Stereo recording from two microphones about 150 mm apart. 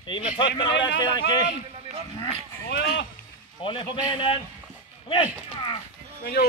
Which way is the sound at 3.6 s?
35° left (ahead or behind).